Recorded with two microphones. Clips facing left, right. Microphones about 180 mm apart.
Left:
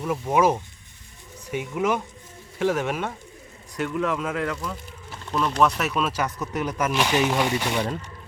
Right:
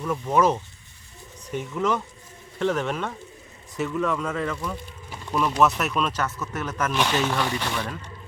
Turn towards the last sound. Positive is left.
turn(degrees=20)  # may be behind; listen again after turning